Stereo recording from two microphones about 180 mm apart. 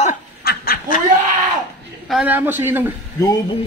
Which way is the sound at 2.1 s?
5° right (ahead or behind).